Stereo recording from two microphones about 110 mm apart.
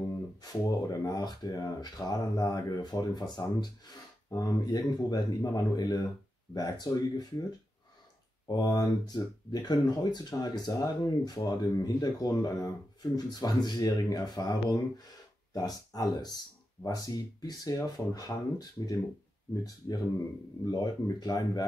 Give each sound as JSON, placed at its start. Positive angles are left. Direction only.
{"t": 0.4, "sound": "speech", "side_deg": 35}
{"t": 8.5, "sound": "speech", "side_deg": 35}
{"t": 20.7, "sound": "speech", "side_deg": 35}